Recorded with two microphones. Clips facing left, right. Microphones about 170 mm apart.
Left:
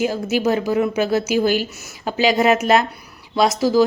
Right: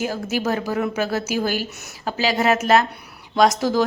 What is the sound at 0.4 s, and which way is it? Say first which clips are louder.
A woman's voice: left 5 dB; 15° left (ahead or behind).